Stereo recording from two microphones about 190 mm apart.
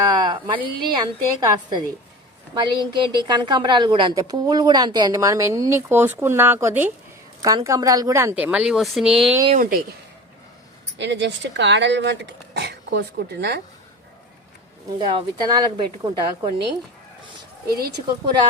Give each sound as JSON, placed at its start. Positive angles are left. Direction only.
{"t": 0.1, "sound": "a woman's voice", "side_deg": -25}
{"t": 9.6, "sound": "speech", "side_deg": -50}
{"t": 10.9, "sound": "speech", "side_deg": -70}
{"t": 14.9, "sound": "a woman's voice", "side_deg": -20}
{"t": 17.7, "sound": "speech", "side_deg": -55}